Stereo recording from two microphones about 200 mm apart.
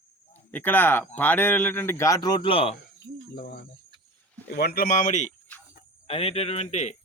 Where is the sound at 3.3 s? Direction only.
55° left (ahead or behind).